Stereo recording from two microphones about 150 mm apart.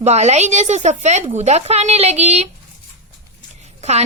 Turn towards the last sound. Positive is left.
turn(degrees=-50)  # may be behind; listen again after turning